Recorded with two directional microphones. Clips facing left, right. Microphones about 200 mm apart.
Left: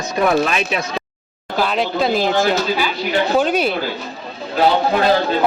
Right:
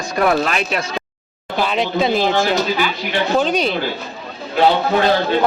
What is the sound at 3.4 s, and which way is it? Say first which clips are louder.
Speech: left 1 dB; 5° left (ahead or behind).